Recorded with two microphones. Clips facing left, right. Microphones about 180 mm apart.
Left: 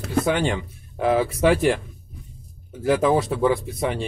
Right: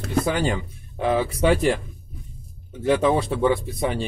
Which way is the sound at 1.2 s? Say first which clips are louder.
Left 1 dB; 30° right (ahead or behind).